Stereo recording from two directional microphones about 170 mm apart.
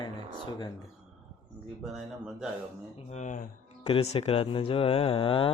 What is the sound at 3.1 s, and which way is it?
Speech, 45° left (ahead or behind).